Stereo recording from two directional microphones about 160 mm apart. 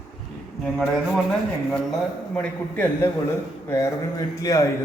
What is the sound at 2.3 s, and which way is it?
Speech, 10° left (ahead or behind).